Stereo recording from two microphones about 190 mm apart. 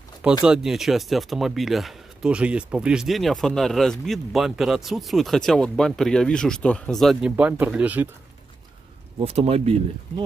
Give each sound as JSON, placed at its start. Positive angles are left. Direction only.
{"t": 0.5, "sound": "speech", "side_deg": 0}
{"t": 9.2, "sound": "speech", "side_deg": -30}